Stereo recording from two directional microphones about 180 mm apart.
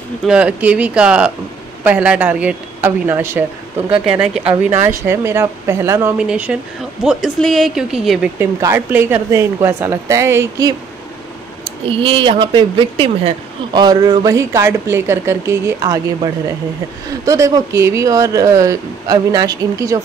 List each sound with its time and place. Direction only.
0.2 s speech: 5° right (ahead or behind)
8.4 s speech: 15° right (ahead or behind)
11.9 s speech: 30° right (ahead or behind)
17.2 s speech: 15° right (ahead or behind)